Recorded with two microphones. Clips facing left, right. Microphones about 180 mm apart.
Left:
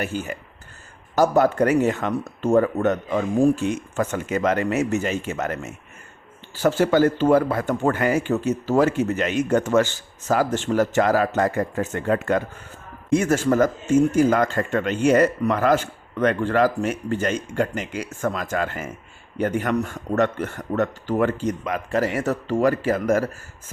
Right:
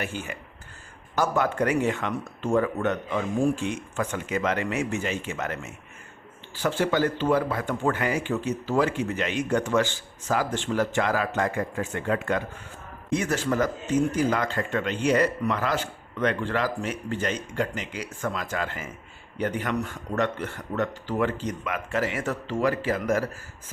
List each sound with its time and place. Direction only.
0.0 s speech: 40° left (ahead or behind)